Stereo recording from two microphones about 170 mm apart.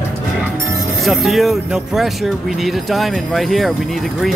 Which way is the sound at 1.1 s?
Centre (ahead or behind).